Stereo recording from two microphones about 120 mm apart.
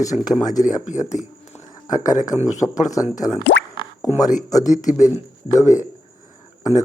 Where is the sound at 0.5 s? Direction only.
90° left.